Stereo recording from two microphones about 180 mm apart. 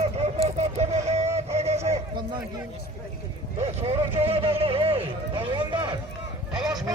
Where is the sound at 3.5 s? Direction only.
35° right (ahead or behind).